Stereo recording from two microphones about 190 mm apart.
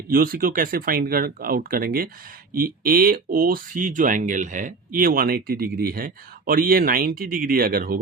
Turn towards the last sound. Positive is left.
turn(degrees=-50)  # may be behind; listen again after turning